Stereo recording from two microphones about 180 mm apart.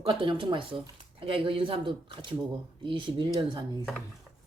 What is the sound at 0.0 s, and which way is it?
Speech, 30° right (ahead or behind).